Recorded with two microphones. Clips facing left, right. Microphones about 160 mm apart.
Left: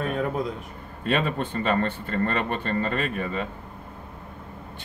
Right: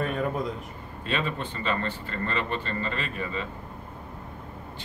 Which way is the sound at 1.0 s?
55° left (ahead or behind).